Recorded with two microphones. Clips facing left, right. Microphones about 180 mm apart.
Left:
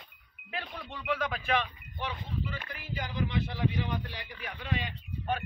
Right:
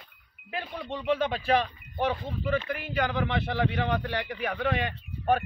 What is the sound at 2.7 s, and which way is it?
A man's voice, 70° right (ahead or behind).